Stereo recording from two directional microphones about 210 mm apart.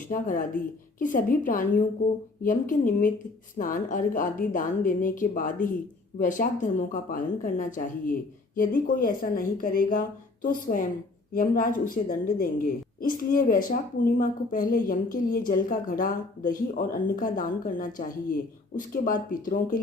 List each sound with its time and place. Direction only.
0.1 s speech: 40° left (ahead or behind)